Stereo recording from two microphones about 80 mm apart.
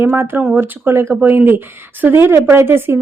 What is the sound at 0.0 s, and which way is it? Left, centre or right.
A woman's voice, right.